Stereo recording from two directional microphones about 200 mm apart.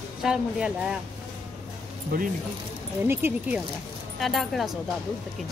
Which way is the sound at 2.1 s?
45° right (ahead or behind).